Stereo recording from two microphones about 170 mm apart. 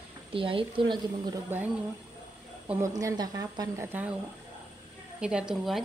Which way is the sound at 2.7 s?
15° right (ahead or behind).